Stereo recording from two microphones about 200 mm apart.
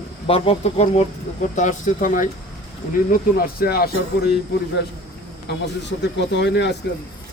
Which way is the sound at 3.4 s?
50° left (ahead or behind).